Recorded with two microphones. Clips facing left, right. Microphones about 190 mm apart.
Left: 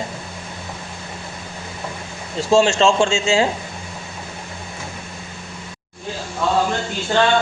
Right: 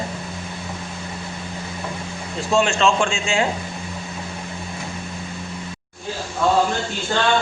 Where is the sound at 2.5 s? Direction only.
30° left (ahead or behind).